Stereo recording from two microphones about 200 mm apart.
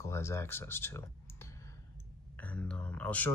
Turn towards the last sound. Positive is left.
turn(degrees=5)  # may be behind; listen again after turning